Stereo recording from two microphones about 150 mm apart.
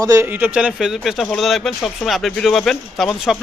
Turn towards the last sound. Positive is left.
turn(degrees=0)  # may be behind; listen again after turning